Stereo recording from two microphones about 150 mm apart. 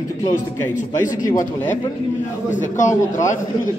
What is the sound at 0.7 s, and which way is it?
A man's voice, 60° left (ahead or behind).